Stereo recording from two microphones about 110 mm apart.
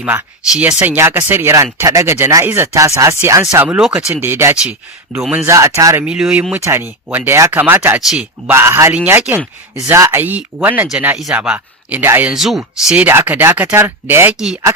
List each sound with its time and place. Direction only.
0.5 s speech: 10° right (ahead or behind)
3.8 s speech: 5° right (ahead or behind)
4.1 s speech: 20° right (ahead or behind)
6.1 s speech: 5° right (ahead or behind)
6.7 s speech: 20° right (ahead or behind)
8.4 s speech: 25° right (ahead or behind)
12.3 s speech: 5° right (ahead or behind)
13.1 s speech: 15° right (ahead or behind)
14.3 s speech: 5° right (ahead or behind)